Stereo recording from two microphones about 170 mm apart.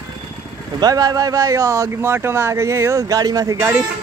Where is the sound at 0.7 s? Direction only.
20° right (ahead or behind).